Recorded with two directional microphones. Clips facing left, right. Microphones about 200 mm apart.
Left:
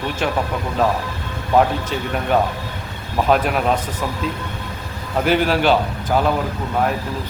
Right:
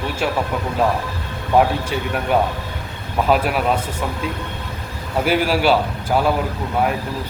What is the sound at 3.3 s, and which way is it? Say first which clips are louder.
Speech: even; 5° right (ahead or behind).